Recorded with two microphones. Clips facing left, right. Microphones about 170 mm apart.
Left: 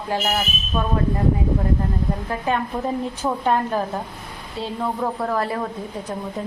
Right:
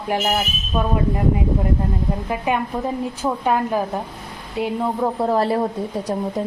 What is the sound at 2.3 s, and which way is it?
A woman's voice, 15° right (ahead or behind).